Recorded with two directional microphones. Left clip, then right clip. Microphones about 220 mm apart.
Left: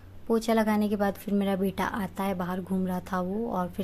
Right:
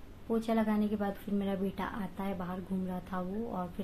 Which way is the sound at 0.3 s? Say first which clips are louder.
Left 7 dB; 50° left (ahead or behind).